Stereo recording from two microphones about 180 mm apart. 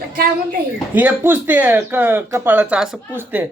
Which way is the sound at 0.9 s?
10° right (ahead or behind).